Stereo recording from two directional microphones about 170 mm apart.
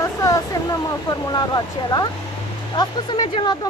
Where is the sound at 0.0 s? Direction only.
20° left (ahead or behind).